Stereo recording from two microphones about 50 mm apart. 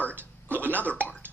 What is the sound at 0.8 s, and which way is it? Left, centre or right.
Speech, left.